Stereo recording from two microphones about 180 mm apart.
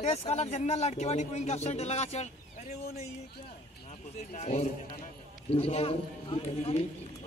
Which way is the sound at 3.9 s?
40° left (ahead or behind).